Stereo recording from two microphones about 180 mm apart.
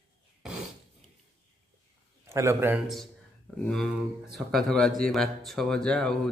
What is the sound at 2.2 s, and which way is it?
Speech, 15° right (ahead or behind).